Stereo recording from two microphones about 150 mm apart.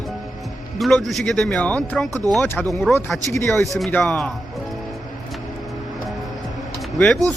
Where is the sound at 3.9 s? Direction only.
10° left (ahead or behind).